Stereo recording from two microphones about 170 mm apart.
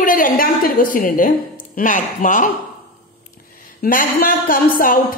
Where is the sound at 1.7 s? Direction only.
50° left (ahead or behind).